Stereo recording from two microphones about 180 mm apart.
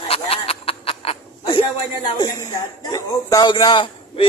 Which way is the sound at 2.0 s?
20° left (ahead or behind).